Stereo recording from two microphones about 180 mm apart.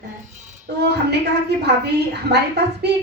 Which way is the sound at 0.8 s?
65° right (ahead or behind).